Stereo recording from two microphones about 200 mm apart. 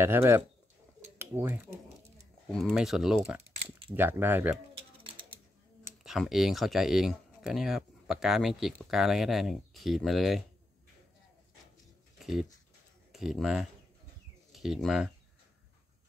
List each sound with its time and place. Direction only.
0.0 s speech: 10° right (ahead or behind)
6.0 s speech: centre (ahead or behind)
12.2 s dog: centre (ahead or behind)
13.1 s speech: centre (ahead or behind)